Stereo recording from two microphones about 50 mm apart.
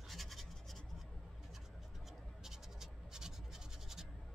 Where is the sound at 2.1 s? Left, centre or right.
Centre.